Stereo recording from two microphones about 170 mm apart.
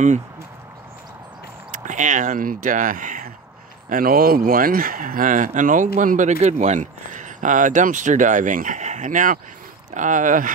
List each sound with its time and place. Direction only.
1.7 s speech: 45° right (ahead or behind)